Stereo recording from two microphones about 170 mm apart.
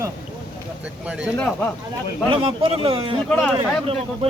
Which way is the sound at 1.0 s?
5° right (ahead or behind).